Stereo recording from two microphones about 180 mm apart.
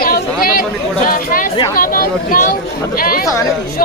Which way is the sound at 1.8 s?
50° left (ahead or behind).